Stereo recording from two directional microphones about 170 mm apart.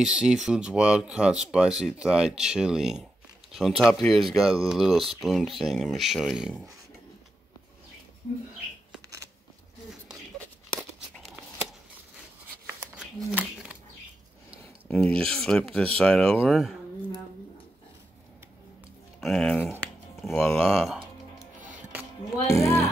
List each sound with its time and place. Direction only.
0.0 s speech: 5° right (ahead or behind)
12.9 s a sound: 5° right (ahead or behind)
14.9 s speech: 5° left (ahead or behind)
19.2 s speech: 5° left (ahead or behind)
22.5 s speech: 15° left (ahead or behind)